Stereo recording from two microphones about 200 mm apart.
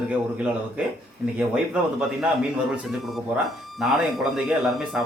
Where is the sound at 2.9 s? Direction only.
Centre (ahead or behind).